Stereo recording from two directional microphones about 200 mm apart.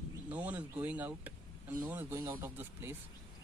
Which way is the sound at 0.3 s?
10° right (ahead or behind).